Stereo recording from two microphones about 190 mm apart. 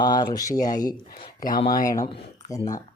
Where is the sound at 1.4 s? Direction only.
50° left (ahead or behind).